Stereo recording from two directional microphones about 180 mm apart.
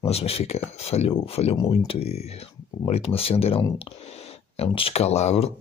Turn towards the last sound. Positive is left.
turn(degrees=35)  # may be behind; listen again after turning